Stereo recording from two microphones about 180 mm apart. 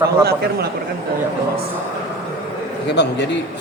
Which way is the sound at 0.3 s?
60° right (ahead or behind).